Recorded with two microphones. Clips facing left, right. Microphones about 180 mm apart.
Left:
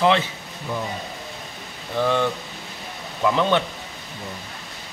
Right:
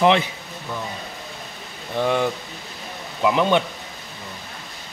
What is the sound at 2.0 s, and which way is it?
Speech, 10° right (ahead or behind).